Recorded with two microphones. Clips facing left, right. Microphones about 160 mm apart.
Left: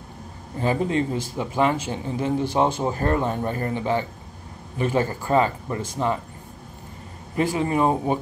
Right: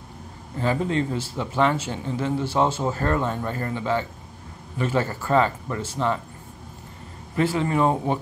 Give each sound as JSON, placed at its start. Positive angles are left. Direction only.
{"t": 0.6, "sound": "speech", "side_deg": 20}
{"t": 7.3, "sound": "speech", "side_deg": 15}